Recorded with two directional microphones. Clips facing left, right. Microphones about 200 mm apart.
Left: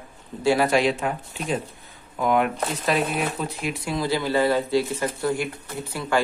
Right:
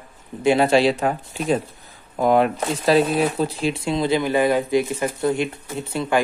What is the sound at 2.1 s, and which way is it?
Speech, 35° right (ahead or behind).